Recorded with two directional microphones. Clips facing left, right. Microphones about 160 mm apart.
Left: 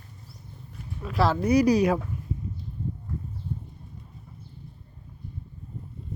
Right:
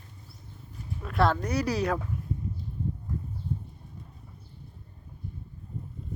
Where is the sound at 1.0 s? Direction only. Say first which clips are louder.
Left 1 dB; centre (ahead or behind).